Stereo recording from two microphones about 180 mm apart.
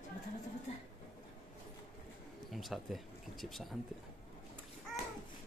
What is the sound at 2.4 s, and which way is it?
Speech, centre (ahead or behind).